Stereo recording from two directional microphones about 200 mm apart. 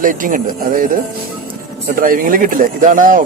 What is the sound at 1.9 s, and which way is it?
Speech, 45° right (ahead or behind).